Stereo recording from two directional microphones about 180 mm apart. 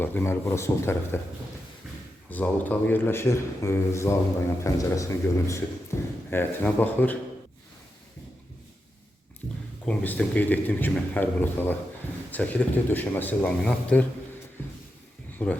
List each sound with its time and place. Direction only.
0.0 s a man's voice: 10° left (ahead or behind)
2.3 s a man's voice: 10° left (ahead or behind)
5.9 s a sound: 15° left (ahead or behind)
6.3 s a man's voice: 10° left (ahead or behind)
9.8 s a man's voice: 10° left (ahead or behind)